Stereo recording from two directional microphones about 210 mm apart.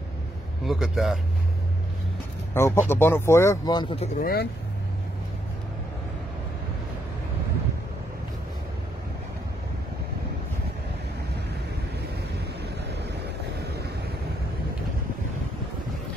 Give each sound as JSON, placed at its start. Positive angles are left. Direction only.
{"t": 0.7, "sound": "a man's voice", "side_deg": 0}
{"t": 2.5, "sound": "speech", "side_deg": 10}
{"t": 12.9, "sound": "waves", "side_deg": -55}